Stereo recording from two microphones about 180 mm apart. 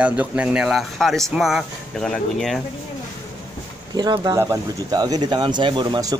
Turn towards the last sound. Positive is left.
turn(degrees=-20)  # may be behind; listen again after turning